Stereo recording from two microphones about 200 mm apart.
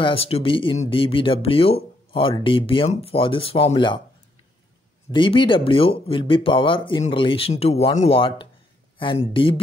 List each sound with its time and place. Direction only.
0.0 s speech: 30° left (ahead or behind)
5.1 s speech: 25° left (ahead or behind)